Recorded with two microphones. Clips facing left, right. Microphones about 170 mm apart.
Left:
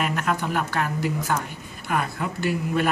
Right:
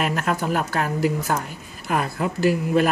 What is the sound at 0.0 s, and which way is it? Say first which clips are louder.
A man's voice: right 2 dB; 35° right (ahead or behind).